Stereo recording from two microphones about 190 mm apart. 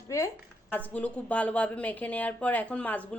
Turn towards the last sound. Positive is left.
turn(degrees=5)  # may be behind; listen again after turning